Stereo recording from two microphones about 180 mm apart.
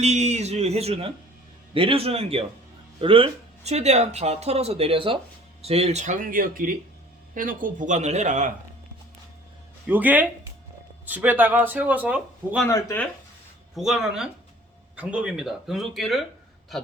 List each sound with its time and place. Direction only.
0.0 s speech: 40° right (ahead or behind)
9.8 s speech: 10° right (ahead or behind)
12.6 s speech: 15° left (ahead or behind)
13.7 s speech: centre (ahead or behind)